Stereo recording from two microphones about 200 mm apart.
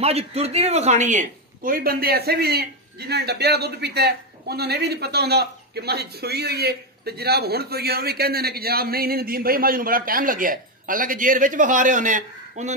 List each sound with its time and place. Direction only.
0.0 s speech: 30° right (ahead or behind)